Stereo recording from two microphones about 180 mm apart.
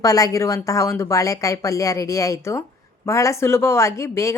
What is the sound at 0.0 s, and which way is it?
Speech, 20° left (ahead or behind).